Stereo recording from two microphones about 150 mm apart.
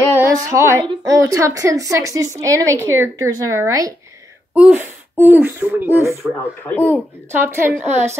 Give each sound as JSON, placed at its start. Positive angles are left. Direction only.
{"t": 0.2, "sound": "speech", "side_deg": -20}
{"t": 4.6, "sound": "speech", "side_deg": -10}
{"t": 7.9, "sound": "a woman's voice", "side_deg": -45}